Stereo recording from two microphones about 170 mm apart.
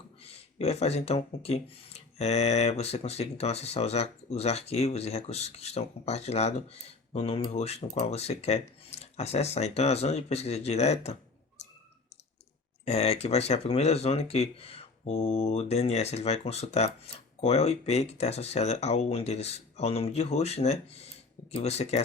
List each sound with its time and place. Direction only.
0.2 s speech: 35° left (ahead or behind)
12.8 s speech: 40° left (ahead or behind)